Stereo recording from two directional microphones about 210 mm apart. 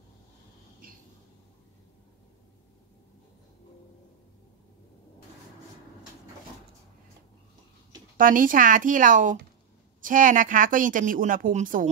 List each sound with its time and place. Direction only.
8.2 s a woman's voice: 40° right (ahead or behind)